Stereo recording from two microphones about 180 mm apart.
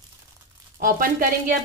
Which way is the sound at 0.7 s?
50° right (ahead or behind).